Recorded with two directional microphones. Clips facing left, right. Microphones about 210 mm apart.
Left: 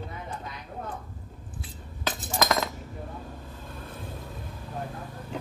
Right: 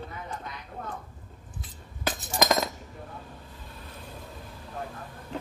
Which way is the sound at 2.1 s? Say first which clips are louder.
Right 1 dB; 15° right (ahead or behind).